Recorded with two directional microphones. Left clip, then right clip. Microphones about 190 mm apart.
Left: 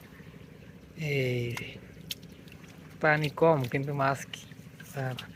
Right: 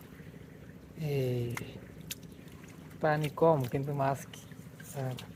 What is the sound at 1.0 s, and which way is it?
Speech, 5° right (ahead or behind).